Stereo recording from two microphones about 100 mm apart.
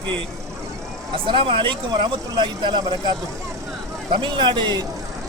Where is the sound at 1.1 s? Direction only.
60° right (ahead or behind).